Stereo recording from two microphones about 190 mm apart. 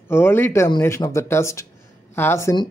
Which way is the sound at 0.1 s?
10° left (ahead or behind).